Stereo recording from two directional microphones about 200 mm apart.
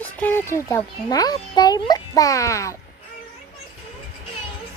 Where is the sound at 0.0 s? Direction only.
10° left (ahead or behind).